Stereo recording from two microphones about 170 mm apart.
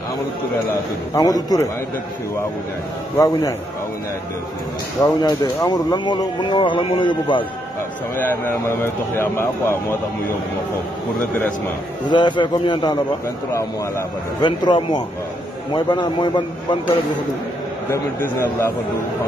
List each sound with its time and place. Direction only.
1.1 s speech: 20° left (ahead or behind)
3.2 s speech: 20° left (ahead or behind)
5.0 s speech: 20° left (ahead or behind)
8.2 s speech: 10° left (ahead or behind)
11.3 s speech: 10° left (ahead or behind)
12.1 s speech: 25° left (ahead or behind)
18.2 s speech: 15° left (ahead or behind)